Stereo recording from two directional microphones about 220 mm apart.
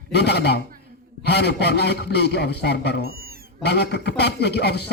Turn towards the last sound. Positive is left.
turn(degrees=50)  # may be behind; listen again after turning